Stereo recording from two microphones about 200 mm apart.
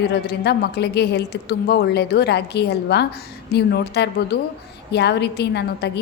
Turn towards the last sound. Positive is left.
turn(degrees=55)  # may be behind; listen again after turning